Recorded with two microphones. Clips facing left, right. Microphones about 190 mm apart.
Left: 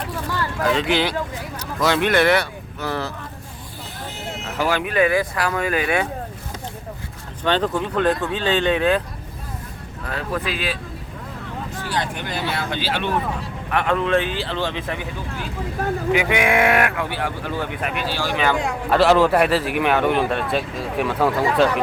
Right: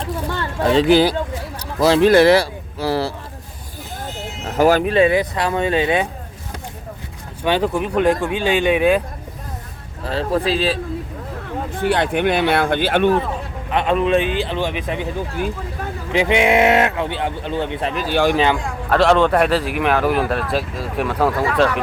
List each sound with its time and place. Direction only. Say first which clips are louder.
0.0 s a sound: right 2 dB; 25° right (ahead or behind)
1.8 s speech: right 6 dB; 30° right (ahead or behind)
4.4 s speech: right 8 dB; 40° right (ahead or behind)
4.9 s speech: right 3 dB; 25° right (ahead or behind)
7.4 s speech: right 2 dB; 10° right (ahead or behind)
10.0 s speech: right 6 dB; 30° right (ahead or behind)
11.7 s speech: right 9 dB; 60° right (ahead or behind)
13.7 s speech: right 3 dB; 20° right (ahead or behind)
16.1 s speech: right 5 dB; 25° right (ahead or behind)
18.1 s speech: right 8 dB; 55° right (ahead or behind)
18.9 s speech: right 1 dB; 5° left (ahead or behind)